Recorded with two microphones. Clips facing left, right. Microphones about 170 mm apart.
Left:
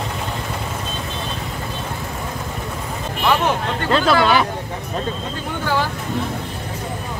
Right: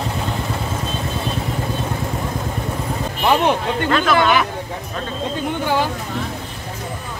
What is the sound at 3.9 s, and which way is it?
Speech, 30° left (ahead or behind).